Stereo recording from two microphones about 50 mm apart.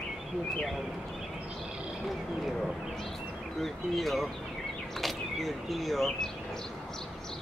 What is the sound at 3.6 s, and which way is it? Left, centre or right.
Speech, centre.